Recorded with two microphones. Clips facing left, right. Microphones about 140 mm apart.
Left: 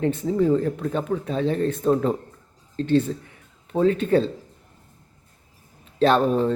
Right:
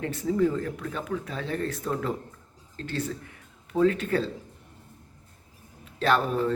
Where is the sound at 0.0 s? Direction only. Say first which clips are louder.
Left 4 dB; 25° left (ahead or behind).